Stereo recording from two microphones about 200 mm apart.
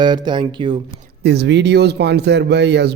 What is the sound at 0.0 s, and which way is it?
Speech, 20° right (ahead or behind).